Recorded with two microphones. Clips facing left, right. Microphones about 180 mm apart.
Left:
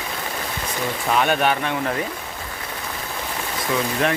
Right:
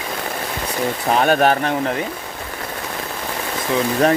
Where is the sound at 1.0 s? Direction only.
40° right (ahead or behind).